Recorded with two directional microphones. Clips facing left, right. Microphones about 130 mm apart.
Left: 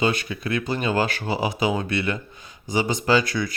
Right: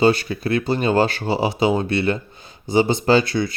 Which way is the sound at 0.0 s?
35° right (ahead or behind).